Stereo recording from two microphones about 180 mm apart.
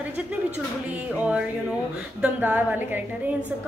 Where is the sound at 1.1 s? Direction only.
5° right (ahead or behind).